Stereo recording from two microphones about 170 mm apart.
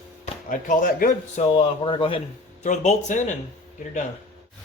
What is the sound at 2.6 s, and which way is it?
Speech, 45° left (ahead or behind).